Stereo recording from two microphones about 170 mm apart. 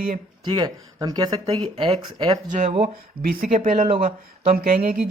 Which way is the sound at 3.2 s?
55° right (ahead or behind).